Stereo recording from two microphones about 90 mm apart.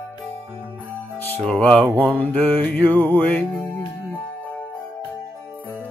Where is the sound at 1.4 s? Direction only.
15° left (ahead or behind).